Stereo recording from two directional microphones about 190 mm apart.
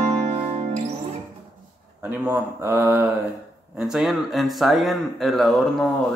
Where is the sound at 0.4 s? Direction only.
30° right (ahead or behind).